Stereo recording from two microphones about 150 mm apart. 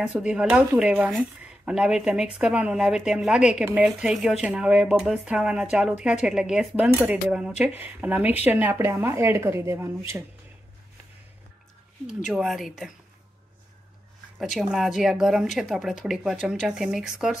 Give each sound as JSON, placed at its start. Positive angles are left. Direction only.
{"t": 0.0, "sound": "a woman's voice", "side_deg": -5}
{"t": 12.3, "sound": "a woman's voice", "side_deg": 0}
{"t": 14.4, "sound": "a woman's voice", "side_deg": 0}